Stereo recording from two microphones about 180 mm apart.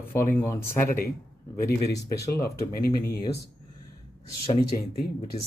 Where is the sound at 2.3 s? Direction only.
55° left (ahead or behind).